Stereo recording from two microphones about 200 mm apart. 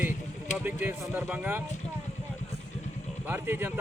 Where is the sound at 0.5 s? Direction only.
10° right (ahead or behind).